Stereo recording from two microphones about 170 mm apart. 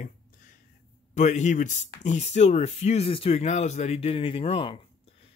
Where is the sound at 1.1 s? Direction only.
45° left (ahead or behind).